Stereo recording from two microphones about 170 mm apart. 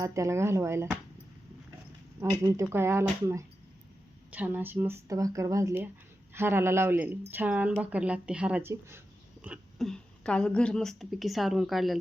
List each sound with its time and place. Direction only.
0.0 s speech: 15° right (ahead or behind)
2.4 s speech: 15° right (ahead or behind)
9.4 s a woman's voice: 5° right (ahead or behind)